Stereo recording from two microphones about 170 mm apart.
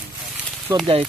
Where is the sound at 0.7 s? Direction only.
15° right (ahead or behind).